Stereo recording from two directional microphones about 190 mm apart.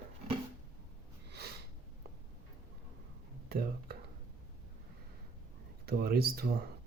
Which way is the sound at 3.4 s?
55° right (ahead or behind).